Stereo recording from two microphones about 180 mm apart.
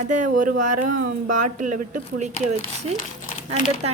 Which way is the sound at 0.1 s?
45° right (ahead or behind).